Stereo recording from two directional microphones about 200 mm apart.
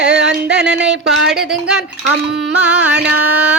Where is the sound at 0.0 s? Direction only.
60° right (ahead or behind).